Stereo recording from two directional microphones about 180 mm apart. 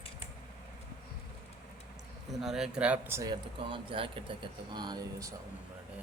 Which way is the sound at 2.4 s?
5° right (ahead or behind).